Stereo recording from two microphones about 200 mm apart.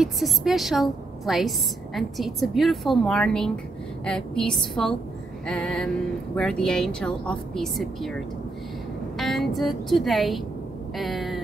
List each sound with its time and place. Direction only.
0.0 s a woman's voice: centre (ahead or behind)
9.2 s a woman's voice: centre (ahead or behind)